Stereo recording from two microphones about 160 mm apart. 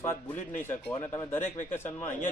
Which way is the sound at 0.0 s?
10° left (ahead or behind).